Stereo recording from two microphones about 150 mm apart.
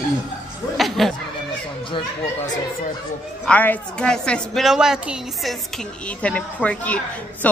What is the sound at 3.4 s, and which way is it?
A woman's voice, 10° left (ahead or behind).